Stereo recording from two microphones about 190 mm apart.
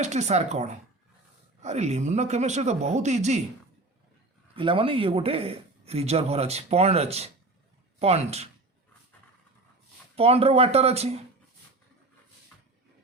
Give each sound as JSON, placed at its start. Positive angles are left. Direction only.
{"t": 0.0, "sound": "a man's voice", "side_deg": -35}
{"t": 4.5, "sound": "a man's voice", "side_deg": -30}
{"t": 10.2, "sound": "a man's voice", "side_deg": -30}